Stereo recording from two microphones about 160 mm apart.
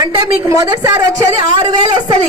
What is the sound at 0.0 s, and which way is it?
A woman's voice, 20° right (ahead or behind).